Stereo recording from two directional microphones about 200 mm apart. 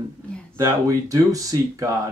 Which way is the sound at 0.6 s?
15° right (ahead or behind).